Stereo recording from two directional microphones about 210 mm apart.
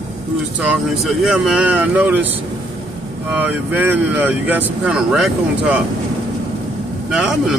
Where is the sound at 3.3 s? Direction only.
10° right (ahead or behind).